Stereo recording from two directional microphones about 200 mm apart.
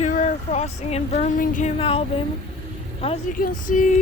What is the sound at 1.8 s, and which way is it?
Speech, 30° left (ahead or behind).